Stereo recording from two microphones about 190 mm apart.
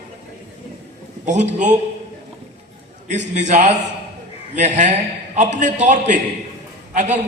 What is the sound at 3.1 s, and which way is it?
A man's voice, 40° right (ahead or behind).